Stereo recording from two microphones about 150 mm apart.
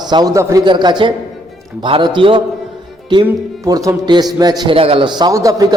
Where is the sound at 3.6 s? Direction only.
20° right (ahead or behind).